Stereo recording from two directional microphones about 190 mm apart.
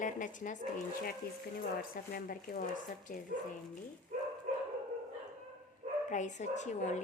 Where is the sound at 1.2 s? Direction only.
55° left (ahead or behind).